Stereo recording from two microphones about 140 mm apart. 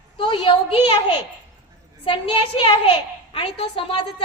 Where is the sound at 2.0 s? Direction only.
40° left (ahead or behind).